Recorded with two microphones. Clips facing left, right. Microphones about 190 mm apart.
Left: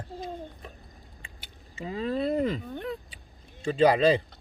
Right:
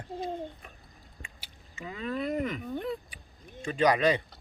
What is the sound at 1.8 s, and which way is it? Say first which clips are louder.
Speech: left 5 dB; 30° left (ahead or behind).